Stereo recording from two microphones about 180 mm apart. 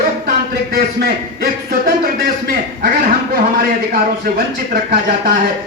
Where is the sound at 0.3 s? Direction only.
55° right (ahead or behind).